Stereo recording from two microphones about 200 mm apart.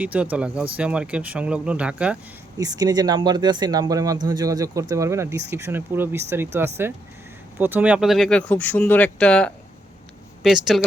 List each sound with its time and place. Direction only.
0.0 s speech: 5° right (ahead or behind)
2.6 s speech: 20° right (ahead or behind); by 10.8 s 5° right (ahead or behind)